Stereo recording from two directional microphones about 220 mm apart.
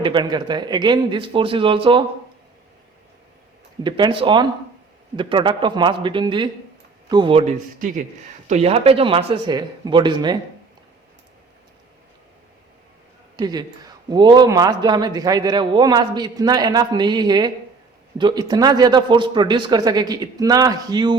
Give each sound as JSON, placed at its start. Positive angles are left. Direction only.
{"t": 0.0, "sound": "a man's voice", "side_deg": -20}
{"t": 3.8, "sound": "a man's voice", "side_deg": -20}
{"t": 13.3, "sound": "a man's voice", "side_deg": -20}